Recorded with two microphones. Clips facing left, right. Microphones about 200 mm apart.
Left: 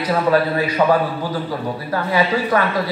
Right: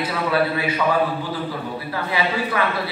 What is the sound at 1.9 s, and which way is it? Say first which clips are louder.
Speech: left 6 dB; 45° left (ahead or behind).